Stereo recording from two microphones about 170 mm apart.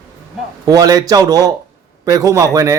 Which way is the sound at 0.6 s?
20° right (ahead or behind).